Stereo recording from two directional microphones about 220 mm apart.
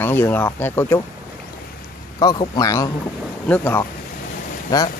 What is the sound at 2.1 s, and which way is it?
Speech, 20° left (ahead or behind).